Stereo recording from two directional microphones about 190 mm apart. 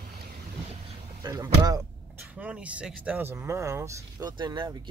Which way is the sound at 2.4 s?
5° right (ahead or behind).